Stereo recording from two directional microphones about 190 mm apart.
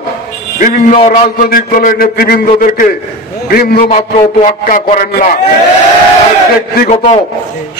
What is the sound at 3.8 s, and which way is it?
A man's voice, 35° left (ahead or behind).